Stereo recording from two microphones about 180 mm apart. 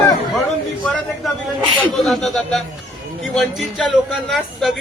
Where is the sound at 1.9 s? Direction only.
Centre (ahead or behind).